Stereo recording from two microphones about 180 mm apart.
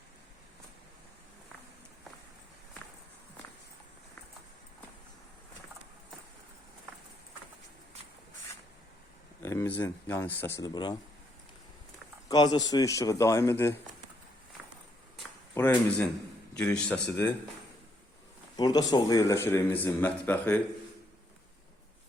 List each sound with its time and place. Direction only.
9.4 s a sound: 15° left (ahead or behind)
9.8 s speech: 15° left (ahead or behind)
12.3 s speech: 20° left (ahead or behind)
15.5 s speech: 10° left (ahead or behind)
18.5 s speech: 20° left (ahead or behind)